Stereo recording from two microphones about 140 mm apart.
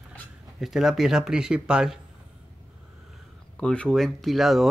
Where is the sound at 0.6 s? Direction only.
5° right (ahead or behind).